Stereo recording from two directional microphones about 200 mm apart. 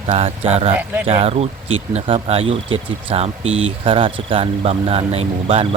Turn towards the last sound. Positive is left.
turn(degrees=-30)  # may be behind; listen again after turning